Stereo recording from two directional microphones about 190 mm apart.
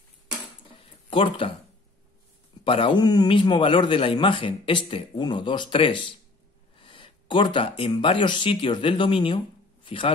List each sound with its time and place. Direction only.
1.1 s a man's voice: 25° left (ahead or behind)
2.6 s a man's voice: 30° left (ahead or behind)